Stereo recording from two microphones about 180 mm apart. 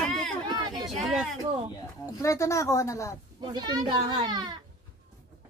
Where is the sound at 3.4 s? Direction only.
25° right (ahead or behind).